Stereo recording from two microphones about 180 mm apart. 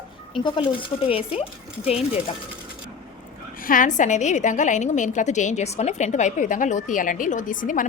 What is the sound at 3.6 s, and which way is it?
A woman's voice, 50° left (ahead or behind).